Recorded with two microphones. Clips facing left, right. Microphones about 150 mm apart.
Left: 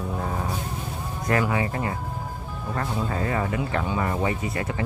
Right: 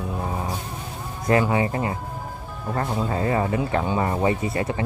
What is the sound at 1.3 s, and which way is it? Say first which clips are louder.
Speech: right 4 dB; 25° right (ahead or behind).